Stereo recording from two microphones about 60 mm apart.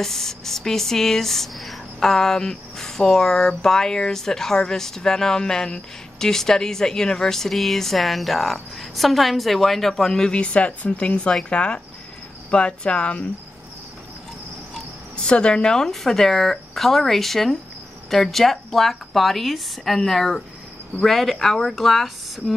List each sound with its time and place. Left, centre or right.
0.0 s speech: centre
14.7 s speech: centre